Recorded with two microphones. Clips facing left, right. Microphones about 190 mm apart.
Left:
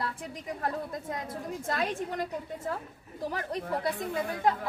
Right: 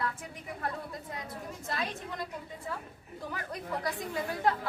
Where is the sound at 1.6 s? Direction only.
50° left (ahead or behind).